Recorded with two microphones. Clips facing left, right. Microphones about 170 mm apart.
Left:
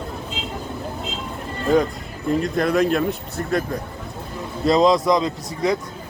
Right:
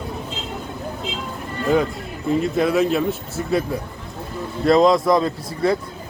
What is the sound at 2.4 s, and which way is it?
Speech, 5° right (ahead or behind).